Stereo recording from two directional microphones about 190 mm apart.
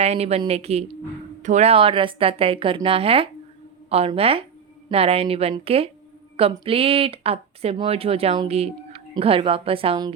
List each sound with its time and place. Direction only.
0.0 s speech: 35° right (ahead or behind)